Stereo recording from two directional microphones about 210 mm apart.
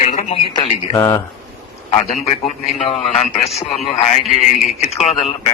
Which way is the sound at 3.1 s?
30° left (ahead or behind).